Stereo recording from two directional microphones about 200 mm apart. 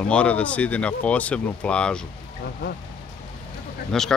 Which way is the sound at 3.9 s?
Centre (ahead or behind).